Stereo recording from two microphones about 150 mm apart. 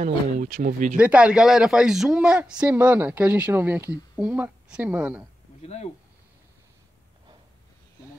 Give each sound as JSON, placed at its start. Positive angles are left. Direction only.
{"t": 0.0, "sound": "speech", "side_deg": -60}
{"t": 0.9, "sound": "speech", "side_deg": -10}
{"t": 5.6, "sound": "speech", "side_deg": 45}